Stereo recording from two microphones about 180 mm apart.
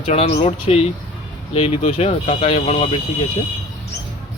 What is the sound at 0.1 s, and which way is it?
A man's voice, 35° left (ahead or behind).